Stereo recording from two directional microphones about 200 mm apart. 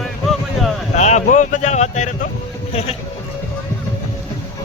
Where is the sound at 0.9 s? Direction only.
35° left (ahead or behind).